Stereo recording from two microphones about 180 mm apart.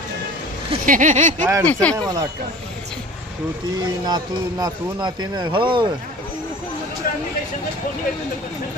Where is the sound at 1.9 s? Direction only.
20° right (ahead or behind).